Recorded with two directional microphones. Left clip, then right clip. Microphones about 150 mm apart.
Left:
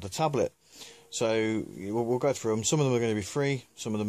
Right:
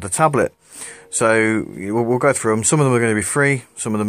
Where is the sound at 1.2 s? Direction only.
15° left (ahead or behind).